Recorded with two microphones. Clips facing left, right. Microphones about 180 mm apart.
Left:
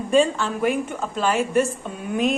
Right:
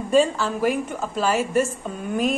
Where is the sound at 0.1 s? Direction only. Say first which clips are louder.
Even; centre (ahead or behind).